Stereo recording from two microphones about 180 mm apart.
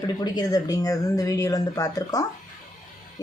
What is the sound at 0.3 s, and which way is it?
Speech, 20° left (ahead or behind).